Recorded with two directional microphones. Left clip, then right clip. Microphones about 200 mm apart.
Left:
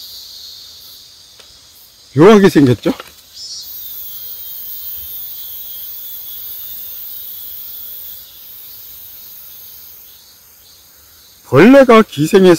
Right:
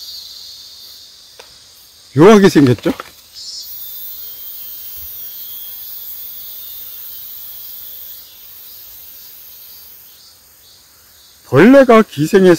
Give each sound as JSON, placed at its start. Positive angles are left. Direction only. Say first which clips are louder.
{"t": 2.1, "sound": "speech", "louder": "even", "side_deg": -5}
{"t": 11.4, "sound": "a man's voice", "louder": "left 1 dB", "side_deg": 5}